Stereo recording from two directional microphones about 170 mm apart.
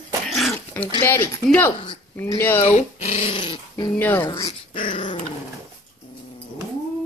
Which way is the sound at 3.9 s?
15° left (ahead or behind).